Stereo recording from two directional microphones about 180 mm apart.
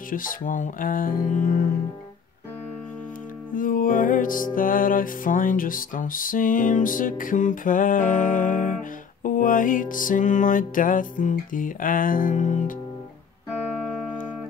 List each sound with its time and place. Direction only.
0.1 s music: 50° left (ahead or behind)
3.5 s music: 50° left (ahead or behind)